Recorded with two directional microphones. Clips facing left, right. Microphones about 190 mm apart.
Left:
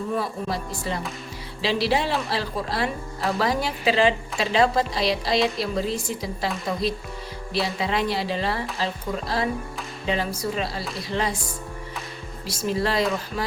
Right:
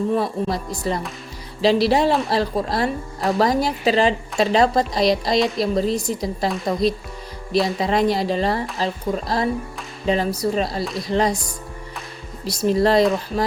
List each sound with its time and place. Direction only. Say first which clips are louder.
0.2 s a woman's voice: right 5 dB; 40° right (ahead or behind)
7.5 s a woman's voice: right 6 dB; 40° right (ahead or behind)
12.5 s a woman's voice: right 7 dB; 40° right (ahead or behind)